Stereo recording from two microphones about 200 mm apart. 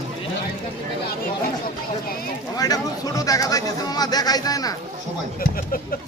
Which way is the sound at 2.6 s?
20° left (ahead or behind).